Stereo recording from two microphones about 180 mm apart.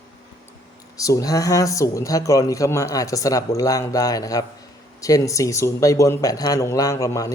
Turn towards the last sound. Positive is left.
turn(degrees=20)  # may be behind; listen again after turning